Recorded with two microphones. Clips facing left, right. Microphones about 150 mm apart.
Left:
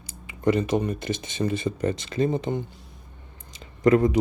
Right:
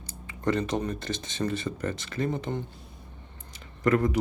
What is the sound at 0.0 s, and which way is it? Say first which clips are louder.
Speech: left 5 dB; 10° left (ahead or behind).